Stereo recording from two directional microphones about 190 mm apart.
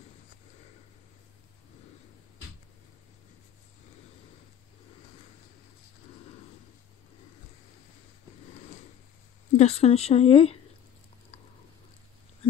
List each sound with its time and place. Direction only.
9.6 s speech: 35° left (ahead or behind)